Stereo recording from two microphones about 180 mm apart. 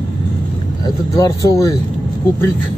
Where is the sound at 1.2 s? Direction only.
20° left (ahead or behind).